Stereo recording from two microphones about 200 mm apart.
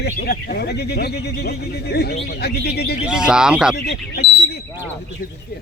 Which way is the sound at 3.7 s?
55° left (ahead or behind).